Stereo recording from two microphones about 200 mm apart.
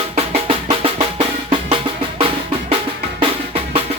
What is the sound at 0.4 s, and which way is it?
Drum, 30° right (ahead or behind).